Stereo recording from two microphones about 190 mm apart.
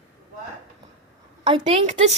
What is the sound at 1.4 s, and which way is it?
Speech, 25° right (ahead or behind).